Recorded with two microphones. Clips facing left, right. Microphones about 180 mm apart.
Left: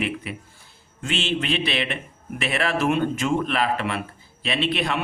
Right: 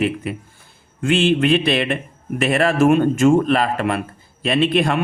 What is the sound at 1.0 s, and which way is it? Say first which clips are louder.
Speech: right 9 dB; 55° right (ahead or behind).